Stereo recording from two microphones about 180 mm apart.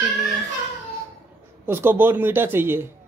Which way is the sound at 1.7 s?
10° right (ahead or behind).